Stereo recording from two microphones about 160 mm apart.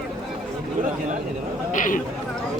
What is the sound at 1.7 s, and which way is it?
Speech, 55° left (ahead or behind).